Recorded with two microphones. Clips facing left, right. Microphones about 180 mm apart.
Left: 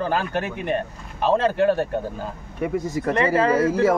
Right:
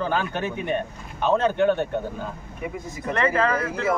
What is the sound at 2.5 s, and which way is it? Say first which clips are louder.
Speech: left 10 dB; 75° left (ahead or behind).